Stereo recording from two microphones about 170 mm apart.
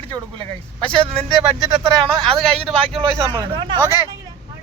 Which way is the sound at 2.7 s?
35° right (ahead or behind).